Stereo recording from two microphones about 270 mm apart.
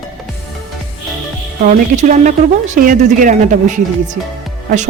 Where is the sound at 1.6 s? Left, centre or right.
Right.